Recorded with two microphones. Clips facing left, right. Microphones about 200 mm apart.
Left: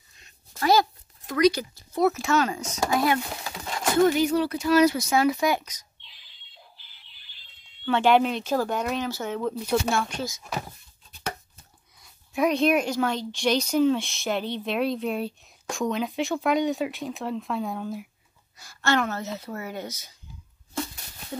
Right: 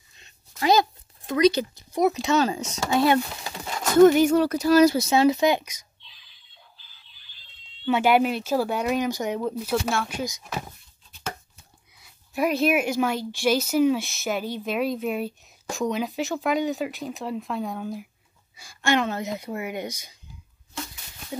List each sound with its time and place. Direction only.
0.6 s a sound: 20° right (ahead or behind)
1.9 s speech: 15° right (ahead or behind)
2.3 s speech: 30° right (ahead or behind)
4.0 s speech: 50° right (ahead or behind)
4.9 s speech: 25° right (ahead or behind)
7.8 s speech: 10° right (ahead or behind)
12.0 s a woman's voice: 5° right (ahead or behind)
18.6 s speech: 15° right (ahead or behind)